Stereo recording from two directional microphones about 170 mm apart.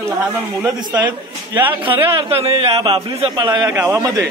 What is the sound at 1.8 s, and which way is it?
A man's voice, 30° right (ahead or behind).